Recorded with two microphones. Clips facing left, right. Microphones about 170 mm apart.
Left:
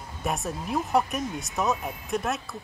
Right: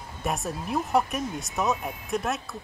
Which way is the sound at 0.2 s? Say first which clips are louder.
Even; centre (ahead or behind).